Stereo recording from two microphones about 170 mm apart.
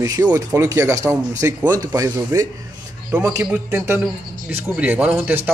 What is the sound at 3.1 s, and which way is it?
Speech, 5° right (ahead or behind).